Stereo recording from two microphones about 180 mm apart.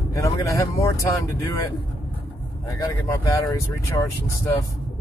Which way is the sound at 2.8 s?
20° left (ahead or behind).